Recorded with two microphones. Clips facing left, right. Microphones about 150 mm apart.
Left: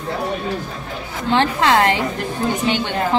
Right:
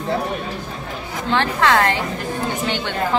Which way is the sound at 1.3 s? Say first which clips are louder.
Left 2 dB; 20° left (ahead or behind).